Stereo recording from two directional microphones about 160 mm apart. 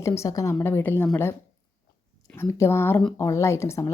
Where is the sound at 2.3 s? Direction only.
15° left (ahead or behind).